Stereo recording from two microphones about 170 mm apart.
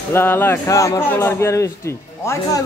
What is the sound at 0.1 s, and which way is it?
A man's voice, 15° left (ahead or behind).